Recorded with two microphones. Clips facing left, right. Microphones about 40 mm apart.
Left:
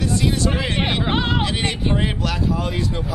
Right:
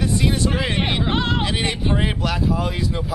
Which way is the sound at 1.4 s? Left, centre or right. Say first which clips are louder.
Even; centre.